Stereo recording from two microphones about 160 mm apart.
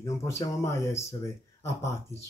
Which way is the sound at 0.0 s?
20° left (ahead or behind).